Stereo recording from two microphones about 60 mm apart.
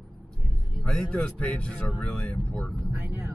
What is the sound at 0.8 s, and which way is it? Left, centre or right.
A man's voice, centre.